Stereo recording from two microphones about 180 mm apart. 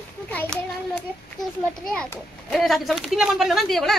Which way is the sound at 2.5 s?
Centre (ahead or behind).